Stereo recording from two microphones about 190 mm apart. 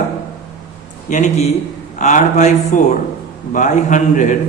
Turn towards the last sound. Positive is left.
turn(degrees=40)  # may be behind; listen again after turning